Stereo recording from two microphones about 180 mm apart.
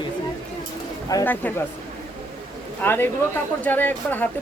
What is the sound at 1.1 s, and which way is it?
Speech, 10° left (ahead or behind).